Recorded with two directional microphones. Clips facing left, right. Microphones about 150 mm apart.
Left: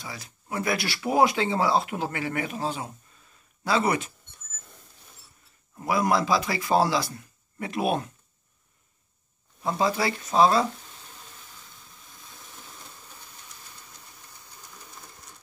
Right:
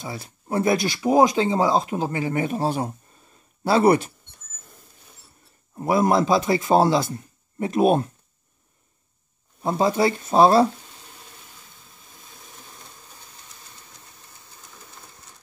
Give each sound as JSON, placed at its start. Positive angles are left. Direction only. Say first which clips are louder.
{"t": 0.5, "sound": "speech", "louder": "right 7 dB", "side_deg": -35}
{"t": 0.8, "sound": "a man's voice", "louder": "right 2 dB", "side_deg": -20}
{"t": 2.4, "sound": "speech", "louder": "right 7 dB", "side_deg": -45}
{"t": 5.8, "sound": "a man's voice", "louder": "right 5 dB", "side_deg": -25}
{"t": 7.7, "sound": "speech", "louder": "right 8 dB", "side_deg": -45}
{"t": 9.6, "sound": "a man's voice", "louder": "right 5 dB", "side_deg": -25}